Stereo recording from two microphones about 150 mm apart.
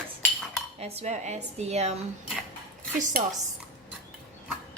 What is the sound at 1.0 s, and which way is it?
Speech, 50° right (ahead or behind).